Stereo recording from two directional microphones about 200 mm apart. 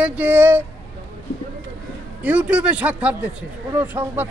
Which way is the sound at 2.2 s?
5° right (ahead or behind).